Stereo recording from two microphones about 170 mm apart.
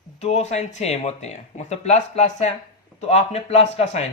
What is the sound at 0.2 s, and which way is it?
Speech, 40° left (ahead or behind).